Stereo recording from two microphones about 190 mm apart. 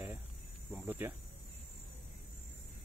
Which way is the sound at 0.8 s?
10° right (ahead or behind).